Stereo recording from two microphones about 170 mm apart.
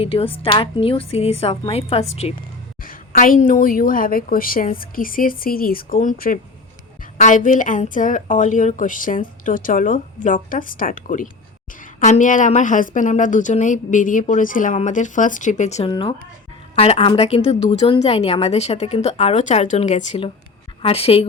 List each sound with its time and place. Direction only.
0.0 s a woman's voice: 35° left (ahead or behind)
2.8 s a woman's voice: 55° left (ahead or behind)
15.9 s a woman's voice: 30° left (ahead or behind)